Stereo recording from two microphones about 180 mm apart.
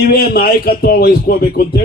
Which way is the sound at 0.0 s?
55° left (ahead or behind).